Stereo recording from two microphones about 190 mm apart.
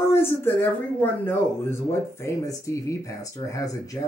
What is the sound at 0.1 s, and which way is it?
Speech, 10° left (ahead or behind).